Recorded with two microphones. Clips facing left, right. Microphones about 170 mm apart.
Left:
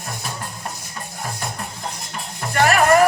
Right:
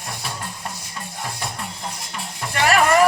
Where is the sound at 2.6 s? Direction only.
45° left (ahead or behind).